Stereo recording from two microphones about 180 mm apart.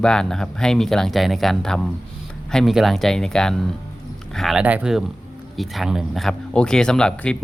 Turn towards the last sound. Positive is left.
turn(degrees=5)  # may be behind; listen again after turning